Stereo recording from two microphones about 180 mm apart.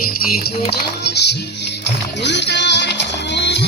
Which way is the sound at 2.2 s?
75° left (ahead or behind).